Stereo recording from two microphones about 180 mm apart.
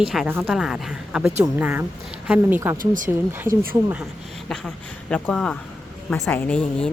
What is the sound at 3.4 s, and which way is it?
Speech, 55° right (ahead or behind).